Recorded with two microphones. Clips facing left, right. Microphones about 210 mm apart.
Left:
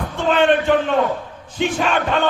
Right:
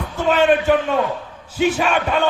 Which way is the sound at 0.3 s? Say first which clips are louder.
Even; 5° right (ahead or behind).